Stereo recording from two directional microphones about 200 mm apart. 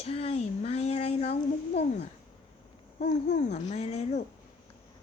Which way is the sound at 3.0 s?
35° left (ahead or behind).